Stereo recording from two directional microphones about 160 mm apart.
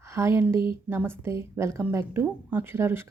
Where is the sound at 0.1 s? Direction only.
15° right (ahead or behind).